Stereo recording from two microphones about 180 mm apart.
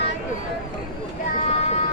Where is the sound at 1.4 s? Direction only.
35° left (ahead or behind).